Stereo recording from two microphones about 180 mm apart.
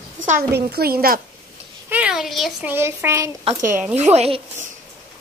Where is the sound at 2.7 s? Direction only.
10° right (ahead or behind).